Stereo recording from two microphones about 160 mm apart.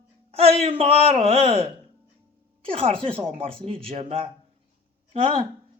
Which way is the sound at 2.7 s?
35° right (ahead or behind).